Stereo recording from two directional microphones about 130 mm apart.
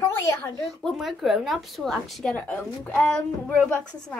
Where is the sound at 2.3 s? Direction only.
10° left (ahead or behind).